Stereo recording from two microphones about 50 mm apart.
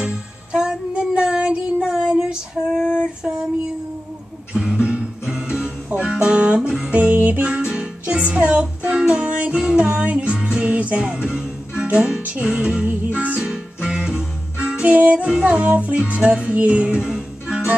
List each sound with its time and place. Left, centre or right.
0.0 s music: centre
1.8 s a sound: centre
2.7 s female singing: centre
4.6 s music: centre; by 7.4 s right
7.4 s music: right
12.8 s music: right
13.4 s music: centre
15.0 s music: right
15.2 s music: right
17.0 s music: centre